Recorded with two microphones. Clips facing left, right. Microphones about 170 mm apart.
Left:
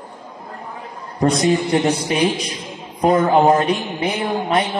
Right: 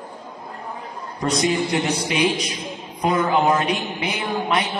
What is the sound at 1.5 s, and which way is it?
A man's voice, 40° left (ahead or behind).